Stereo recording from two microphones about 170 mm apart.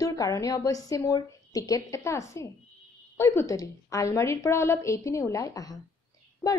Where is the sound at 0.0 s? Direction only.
20° left (ahead or behind).